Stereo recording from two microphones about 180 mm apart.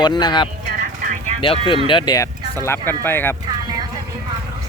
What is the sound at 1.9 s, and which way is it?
Speech, 25° left (ahead or behind).